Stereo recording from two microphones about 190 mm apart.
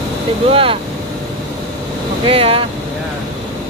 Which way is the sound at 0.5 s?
30° right (ahead or behind).